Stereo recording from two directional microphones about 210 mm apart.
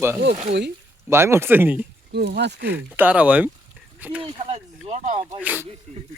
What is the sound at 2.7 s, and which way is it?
Speech, 10° right (ahead or behind).